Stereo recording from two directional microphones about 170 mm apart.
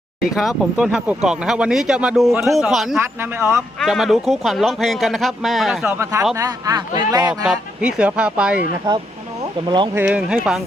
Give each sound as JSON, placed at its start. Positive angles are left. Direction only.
{"t": 0.3, "sound": "speech", "side_deg": 0}
{"t": 3.0, "sound": "speech", "side_deg": -15}
{"t": 3.8, "sound": "speech", "side_deg": 0}
{"t": 5.9, "sound": "speech", "side_deg": -15}
{"t": 7.4, "sound": "speech", "side_deg": -5}
{"t": 9.6, "sound": "speech", "side_deg": -25}
{"t": 9.9, "sound": "speech", "side_deg": -10}